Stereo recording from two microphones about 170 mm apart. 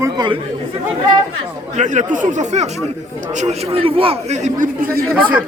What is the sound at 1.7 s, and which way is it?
A man's voice, 45° right (ahead or behind).